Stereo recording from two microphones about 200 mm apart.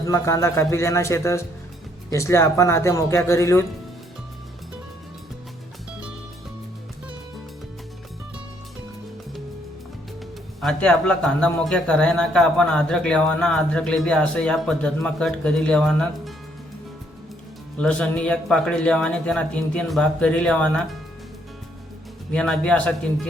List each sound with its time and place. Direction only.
0.0 s speech: 15° left (ahead or behind)
10.6 s a man's voice: 5° left (ahead or behind)
17.7 s a man's voice: 5° left (ahead or behind)
22.3 s a man's voice: 5° left (ahead or behind)